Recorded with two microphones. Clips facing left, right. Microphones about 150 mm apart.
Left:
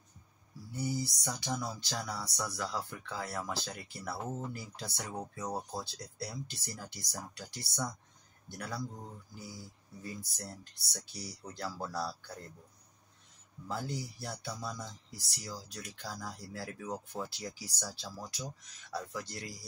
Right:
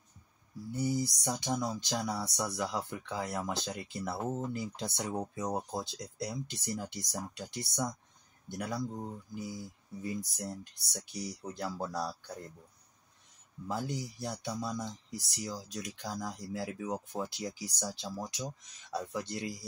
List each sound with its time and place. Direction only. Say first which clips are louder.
0.7 s speech: right 4 dB; 20° right (ahead or behind)
13.7 s speech: right 2 dB; 15° right (ahead or behind)